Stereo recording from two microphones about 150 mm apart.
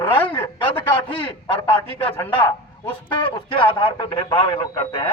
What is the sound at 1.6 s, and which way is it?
Speech, 15° left (ahead or behind).